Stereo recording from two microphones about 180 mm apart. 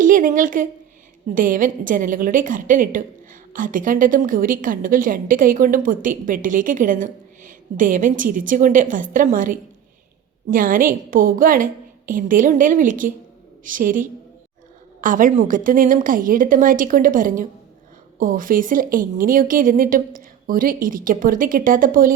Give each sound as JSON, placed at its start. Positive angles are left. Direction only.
{"t": 0.0, "sound": "a woman's voice", "side_deg": -50}